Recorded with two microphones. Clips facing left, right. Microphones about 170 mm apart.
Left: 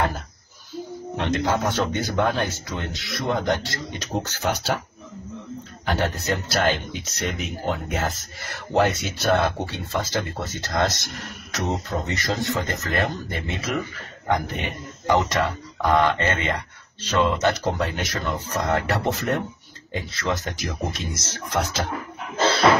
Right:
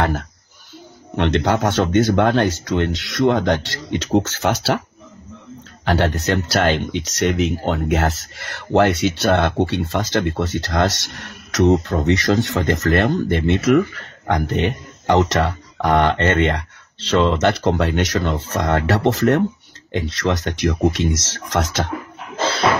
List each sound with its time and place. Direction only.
1.1 s speech: 70° right (ahead or behind)
5.9 s speech: 80° right
15.0 s speech: 70° right (ahead or behind); by 21.8 s 90° right